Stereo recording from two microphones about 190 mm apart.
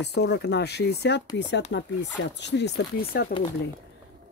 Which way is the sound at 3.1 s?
55° left (ahead or behind).